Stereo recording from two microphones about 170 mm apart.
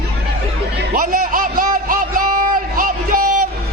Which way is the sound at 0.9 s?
55° right (ahead or behind).